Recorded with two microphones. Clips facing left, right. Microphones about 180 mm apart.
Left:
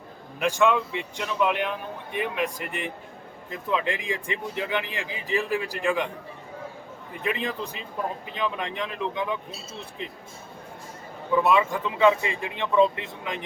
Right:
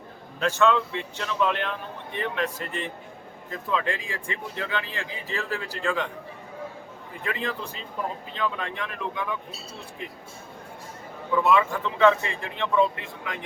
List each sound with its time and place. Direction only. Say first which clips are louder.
0.3 s speech: even; 15° left (ahead or behind)
7.2 s speech: left 2 dB; 20° left (ahead or behind)
11.4 s speech: right 3 dB; 20° left (ahead or behind)